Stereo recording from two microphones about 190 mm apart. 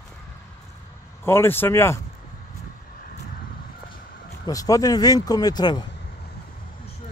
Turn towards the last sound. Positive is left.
turn(degrees=20)  # may be behind; listen again after turning